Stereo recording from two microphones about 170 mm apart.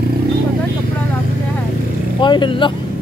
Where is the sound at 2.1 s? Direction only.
30° left (ahead or behind).